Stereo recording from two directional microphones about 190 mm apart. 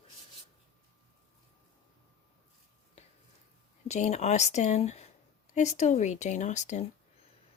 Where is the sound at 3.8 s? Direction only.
35° left (ahead or behind).